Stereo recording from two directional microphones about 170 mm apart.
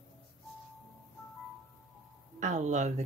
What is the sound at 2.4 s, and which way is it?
Speech, 45° right (ahead or behind).